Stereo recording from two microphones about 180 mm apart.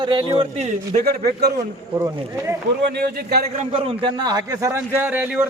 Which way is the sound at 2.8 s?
65° right (ahead or behind).